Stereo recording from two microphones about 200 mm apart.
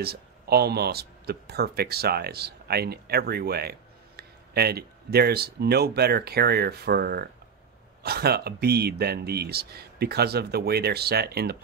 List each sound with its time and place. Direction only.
0.0 s speech: 50° right (ahead or behind)